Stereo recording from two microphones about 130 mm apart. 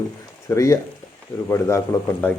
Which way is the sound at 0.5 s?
25° left (ahead or behind).